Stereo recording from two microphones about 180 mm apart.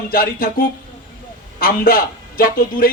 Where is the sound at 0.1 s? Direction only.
55° left (ahead or behind).